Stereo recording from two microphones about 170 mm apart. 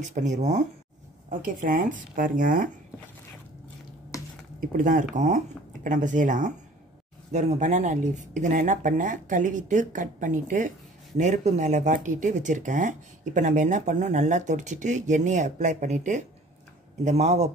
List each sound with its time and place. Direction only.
0.0 s speech: 45° right (ahead or behind)
4.6 s speech: 50° right (ahead or behind)